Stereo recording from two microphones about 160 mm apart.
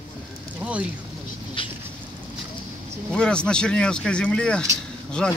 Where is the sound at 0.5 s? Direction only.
10° right (ahead or behind).